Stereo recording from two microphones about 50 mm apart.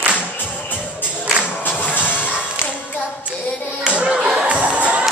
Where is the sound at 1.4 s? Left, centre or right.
Left.